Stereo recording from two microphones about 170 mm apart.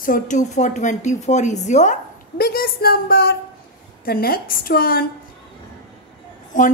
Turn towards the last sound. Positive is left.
turn(degrees=50)  # may be behind; listen again after turning